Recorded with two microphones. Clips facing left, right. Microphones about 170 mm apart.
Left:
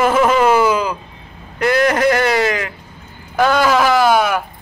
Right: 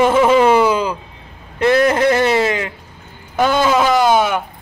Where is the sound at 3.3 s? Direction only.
25° right (ahead or behind).